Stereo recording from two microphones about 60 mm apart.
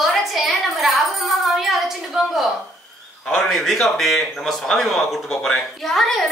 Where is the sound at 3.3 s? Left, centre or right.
Centre.